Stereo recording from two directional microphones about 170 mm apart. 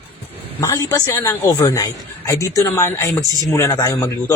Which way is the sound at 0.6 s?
20° left (ahead or behind).